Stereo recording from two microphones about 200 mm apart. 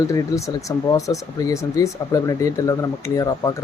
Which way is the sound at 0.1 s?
15° left (ahead or behind).